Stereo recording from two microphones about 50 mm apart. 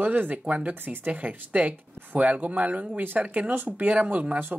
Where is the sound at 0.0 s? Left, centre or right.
Right.